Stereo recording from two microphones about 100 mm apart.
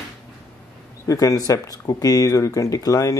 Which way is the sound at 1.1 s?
35° left (ahead or behind).